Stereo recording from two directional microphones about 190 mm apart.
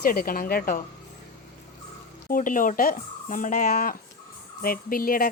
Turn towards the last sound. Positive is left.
turn(degrees=50)  # may be behind; listen again after turning